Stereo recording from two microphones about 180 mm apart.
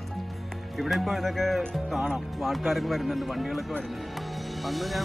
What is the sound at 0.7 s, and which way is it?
Speech, centre (ahead or behind).